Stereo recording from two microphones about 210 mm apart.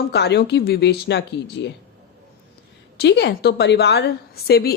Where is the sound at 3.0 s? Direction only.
50° left (ahead or behind).